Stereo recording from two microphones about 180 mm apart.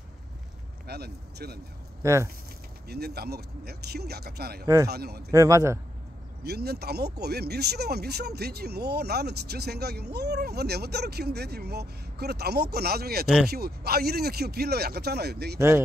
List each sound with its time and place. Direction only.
0.8 s speech: 60° right (ahead or behind)
2.9 s speech: 60° right (ahead or behind)
5.3 s a man's voice: 15° right (ahead or behind)
6.4 s speech: 65° right (ahead or behind)